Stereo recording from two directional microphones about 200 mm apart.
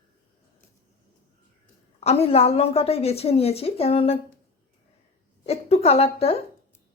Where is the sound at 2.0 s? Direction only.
30° left (ahead or behind).